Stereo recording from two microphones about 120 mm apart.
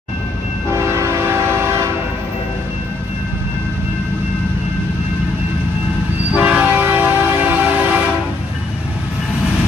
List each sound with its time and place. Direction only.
0.7 s train: 25° right (ahead or behind)
6.3 s train: 10° right (ahead or behind)